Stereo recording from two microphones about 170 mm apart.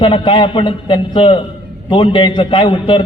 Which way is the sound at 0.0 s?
30° left (ahead or behind).